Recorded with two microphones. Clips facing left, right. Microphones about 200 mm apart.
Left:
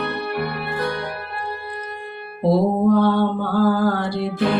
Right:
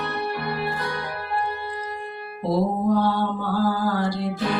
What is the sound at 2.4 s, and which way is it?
Mantra, 60° left (ahead or behind).